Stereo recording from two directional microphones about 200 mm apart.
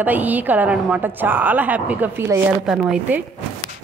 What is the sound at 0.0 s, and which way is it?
A woman's voice, 10° right (ahead or behind).